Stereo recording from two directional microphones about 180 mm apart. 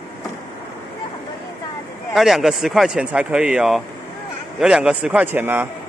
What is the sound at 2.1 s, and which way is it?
A man's voice, centre (ahead or behind).